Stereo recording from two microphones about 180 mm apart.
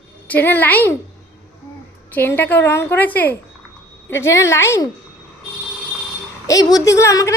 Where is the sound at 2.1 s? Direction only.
10° left (ahead or behind).